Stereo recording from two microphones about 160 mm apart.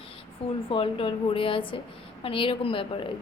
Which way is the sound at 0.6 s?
35° left (ahead or behind).